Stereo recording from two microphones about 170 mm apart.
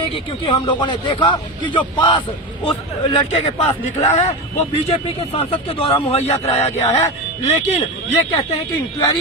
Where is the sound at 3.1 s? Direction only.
35° left (ahead or behind).